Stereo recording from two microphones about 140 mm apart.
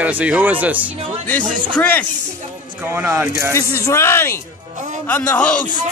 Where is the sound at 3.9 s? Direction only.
20° left (ahead or behind).